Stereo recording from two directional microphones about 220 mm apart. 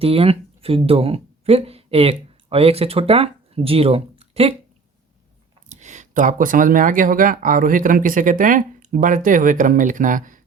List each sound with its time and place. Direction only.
0.0 s speech: 25° right (ahead or behind)
5.6 s speech: 35° right (ahead or behind)